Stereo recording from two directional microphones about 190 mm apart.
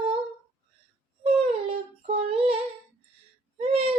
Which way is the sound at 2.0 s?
30° right (ahead or behind).